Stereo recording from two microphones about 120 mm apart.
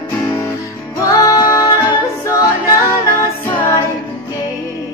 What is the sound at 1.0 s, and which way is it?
Music, 30° left (ahead or behind).